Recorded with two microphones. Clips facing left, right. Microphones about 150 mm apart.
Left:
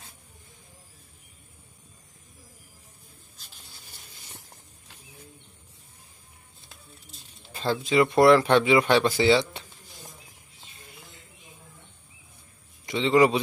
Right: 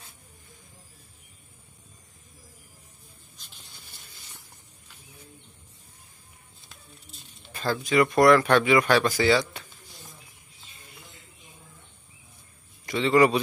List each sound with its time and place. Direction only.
7.5 s speech: 25° left (ahead or behind)
12.8 s a man's voice: 20° left (ahead or behind)